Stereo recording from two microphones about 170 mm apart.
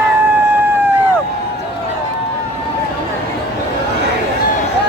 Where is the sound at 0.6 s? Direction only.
10° right (ahead or behind).